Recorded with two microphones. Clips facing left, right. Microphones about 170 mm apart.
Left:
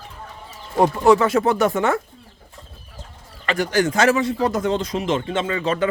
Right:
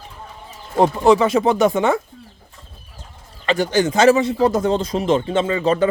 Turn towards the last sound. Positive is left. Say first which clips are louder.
# right 4 dB
turn(degrees=-35)  # may be behind; listen again after turning